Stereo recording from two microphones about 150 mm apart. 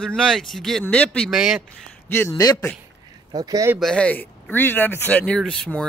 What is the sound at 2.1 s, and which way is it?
Speech, 25° left (ahead or behind).